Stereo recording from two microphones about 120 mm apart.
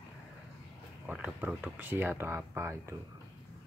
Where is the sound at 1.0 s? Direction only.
10° right (ahead or behind).